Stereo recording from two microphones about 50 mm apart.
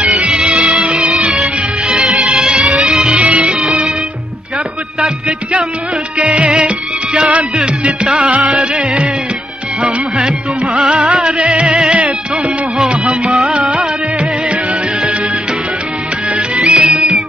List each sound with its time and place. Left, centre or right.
0.2 s music: centre
2.4 s music: right
6.1 s music: right
10.7 s music: right
11.0 s music: centre
11.5 s music: centre
13.5 s music: right
16.3 s music: right